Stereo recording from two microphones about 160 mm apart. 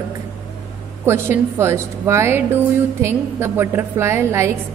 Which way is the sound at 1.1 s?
15° right (ahead or behind).